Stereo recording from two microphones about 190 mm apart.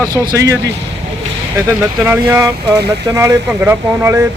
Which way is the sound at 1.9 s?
10° right (ahead or behind).